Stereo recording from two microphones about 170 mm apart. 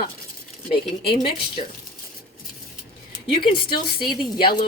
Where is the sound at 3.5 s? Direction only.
30° left (ahead or behind).